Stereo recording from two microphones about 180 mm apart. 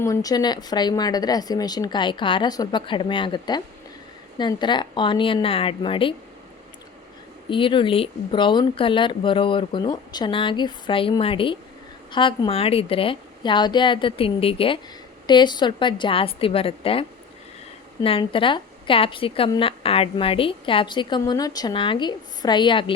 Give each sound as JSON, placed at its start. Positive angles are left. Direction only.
{"t": 0.0, "sound": "speech", "side_deg": 20}
{"t": 7.5, "sound": "speech", "side_deg": 30}